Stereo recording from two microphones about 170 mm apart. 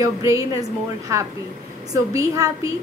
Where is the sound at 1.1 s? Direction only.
15° right (ahead or behind).